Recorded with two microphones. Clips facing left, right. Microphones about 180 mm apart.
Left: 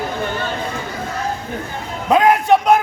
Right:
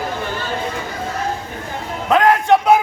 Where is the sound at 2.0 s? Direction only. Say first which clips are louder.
Left 1 dB; 15° left (ahead or behind).